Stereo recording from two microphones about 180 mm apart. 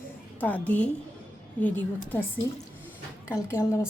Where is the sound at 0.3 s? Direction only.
10° left (ahead or behind).